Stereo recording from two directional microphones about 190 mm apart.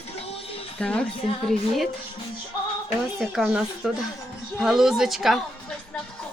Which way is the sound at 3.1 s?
Centre (ahead or behind).